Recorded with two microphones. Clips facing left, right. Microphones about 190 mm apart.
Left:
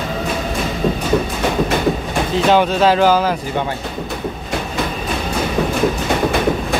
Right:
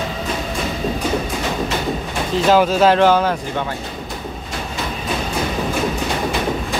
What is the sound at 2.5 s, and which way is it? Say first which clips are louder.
Speech: right 1 dB; centre (ahead or behind).